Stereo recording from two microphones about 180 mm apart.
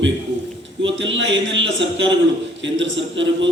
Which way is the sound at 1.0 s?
90° right.